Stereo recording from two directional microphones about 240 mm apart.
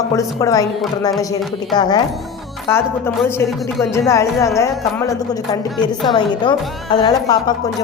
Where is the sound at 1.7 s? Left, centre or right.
Centre.